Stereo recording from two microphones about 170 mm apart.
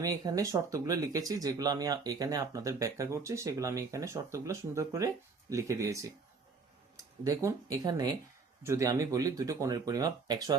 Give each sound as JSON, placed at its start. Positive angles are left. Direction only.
{"t": 0.0, "sound": "speech", "side_deg": -20}